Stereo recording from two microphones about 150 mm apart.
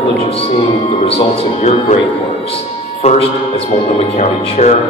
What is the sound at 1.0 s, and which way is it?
Speech, 45° left (ahead or behind).